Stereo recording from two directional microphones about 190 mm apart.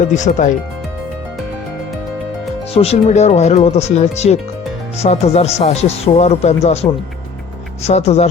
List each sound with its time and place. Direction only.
0.0 s speech: 40° left (ahead or behind)
2.7 s speech: 35° left (ahead or behind)
7.9 s speech: 35° left (ahead or behind)